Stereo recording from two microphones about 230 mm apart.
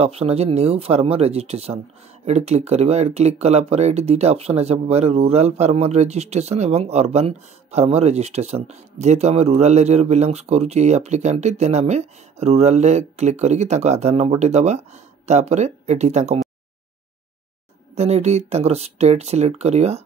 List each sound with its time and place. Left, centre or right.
0.0 s speech: right
17.9 s speech: right